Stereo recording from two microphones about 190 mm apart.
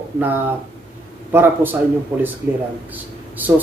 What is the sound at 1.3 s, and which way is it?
Speech, 10° right (ahead or behind).